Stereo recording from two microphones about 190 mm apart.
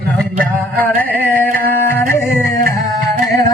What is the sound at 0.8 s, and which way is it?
Music, 10° left (ahead or behind).